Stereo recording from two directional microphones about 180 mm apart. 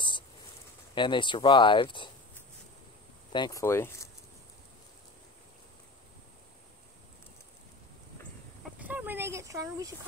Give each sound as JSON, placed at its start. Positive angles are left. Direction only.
{"t": 0.9, "sound": "speech", "side_deg": 25}
{"t": 3.3, "sound": "speech", "side_deg": 25}
{"t": 8.7, "sound": "a sound", "side_deg": -10}